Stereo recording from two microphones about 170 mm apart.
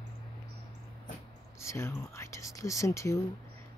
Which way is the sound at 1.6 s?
15° left (ahead or behind).